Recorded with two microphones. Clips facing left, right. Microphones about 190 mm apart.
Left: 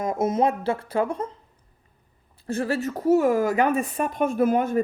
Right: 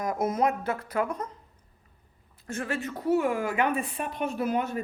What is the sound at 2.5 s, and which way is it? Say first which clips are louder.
A woman's voice: left 7 dB; 35° left (ahead or behind).